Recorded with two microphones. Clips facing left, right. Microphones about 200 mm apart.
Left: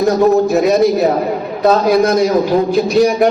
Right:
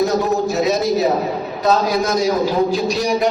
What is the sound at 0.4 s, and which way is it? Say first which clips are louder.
A man's voice: left 6 dB; 55° left (ahead or behind).